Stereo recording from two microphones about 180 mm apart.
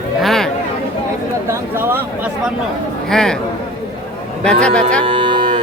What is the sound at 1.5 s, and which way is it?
Speech, 15° right (ahead or behind).